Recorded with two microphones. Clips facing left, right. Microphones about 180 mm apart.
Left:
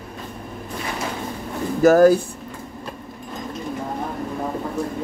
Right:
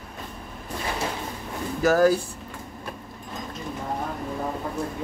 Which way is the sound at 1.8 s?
50° left (ahead or behind).